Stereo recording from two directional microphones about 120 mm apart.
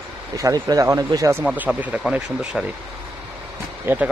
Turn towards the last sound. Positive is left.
turn(degrees=-20)  # may be behind; listen again after turning